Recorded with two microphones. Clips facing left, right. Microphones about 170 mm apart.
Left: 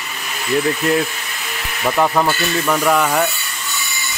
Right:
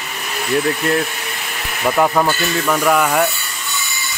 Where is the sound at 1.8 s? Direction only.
5° right (ahead or behind).